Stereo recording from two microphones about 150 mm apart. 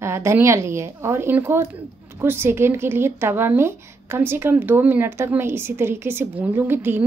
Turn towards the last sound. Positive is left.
turn(degrees=-15)  # may be behind; listen again after turning